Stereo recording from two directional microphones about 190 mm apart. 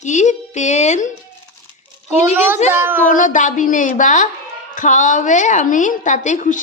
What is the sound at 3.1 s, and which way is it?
Speech, 40° left (ahead or behind).